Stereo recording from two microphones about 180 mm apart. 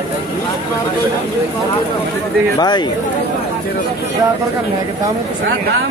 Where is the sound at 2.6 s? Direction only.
25° left (ahead or behind).